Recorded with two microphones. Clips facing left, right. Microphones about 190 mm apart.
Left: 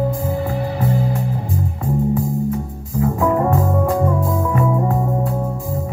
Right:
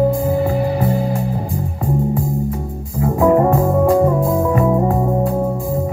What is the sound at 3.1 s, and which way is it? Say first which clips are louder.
Music: right 6 dB; 30° right (ahead or behind).